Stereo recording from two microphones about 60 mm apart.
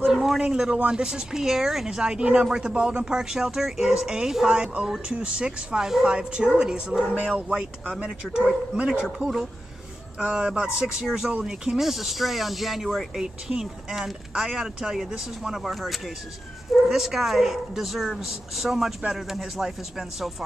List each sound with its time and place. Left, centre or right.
0.0 s speech: centre
7.1 s speech: right
8.8 s speech: centre
11.0 s a woman's voice: centre